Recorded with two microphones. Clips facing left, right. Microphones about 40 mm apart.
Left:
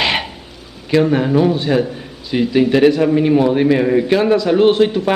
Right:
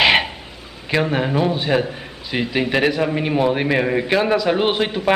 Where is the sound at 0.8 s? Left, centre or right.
Centre.